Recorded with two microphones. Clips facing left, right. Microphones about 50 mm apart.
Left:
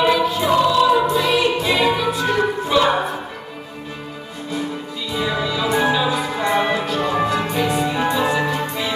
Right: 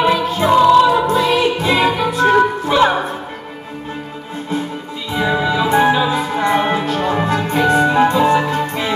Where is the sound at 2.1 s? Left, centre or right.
Right.